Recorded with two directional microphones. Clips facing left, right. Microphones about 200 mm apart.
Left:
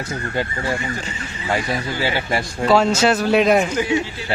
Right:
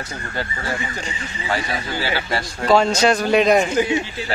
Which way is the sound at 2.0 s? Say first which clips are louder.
Left 3 dB; 15° left (ahead or behind).